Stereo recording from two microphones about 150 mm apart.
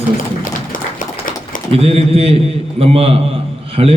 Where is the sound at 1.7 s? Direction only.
40° right (ahead or behind).